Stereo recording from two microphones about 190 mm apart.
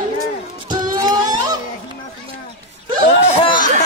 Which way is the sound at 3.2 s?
25° left (ahead or behind).